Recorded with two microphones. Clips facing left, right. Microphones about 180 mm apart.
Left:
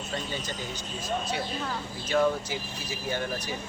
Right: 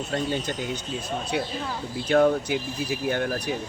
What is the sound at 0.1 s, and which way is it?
Speech, 60° right (ahead or behind).